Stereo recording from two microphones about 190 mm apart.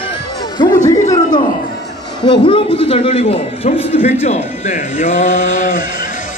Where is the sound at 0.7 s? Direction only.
40° left (ahead or behind).